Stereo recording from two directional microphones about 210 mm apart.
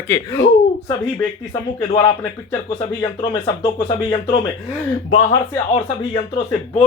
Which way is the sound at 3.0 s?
20° left (ahead or behind).